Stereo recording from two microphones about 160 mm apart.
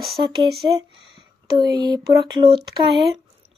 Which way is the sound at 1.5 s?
25° right (ahead or behind).